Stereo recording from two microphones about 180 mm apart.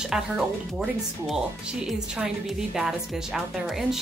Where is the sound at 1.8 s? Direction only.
5° right (ahead or behind).